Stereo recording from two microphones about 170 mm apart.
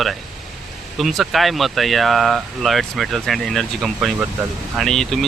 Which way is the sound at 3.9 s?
10° right (ahead or behind).